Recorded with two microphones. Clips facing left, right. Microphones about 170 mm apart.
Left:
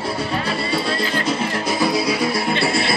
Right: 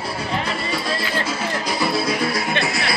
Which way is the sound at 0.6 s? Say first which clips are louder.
Left 3 dB; 30° left (ahead or behind).